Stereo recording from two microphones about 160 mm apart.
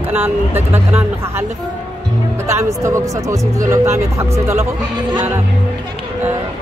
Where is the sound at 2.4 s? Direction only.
20° right (ahead or behind).